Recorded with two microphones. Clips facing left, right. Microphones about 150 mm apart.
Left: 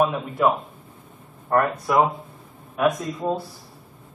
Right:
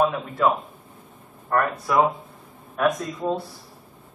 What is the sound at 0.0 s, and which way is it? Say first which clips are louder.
Speech: left 1 dB; 5° left (ahead or behind).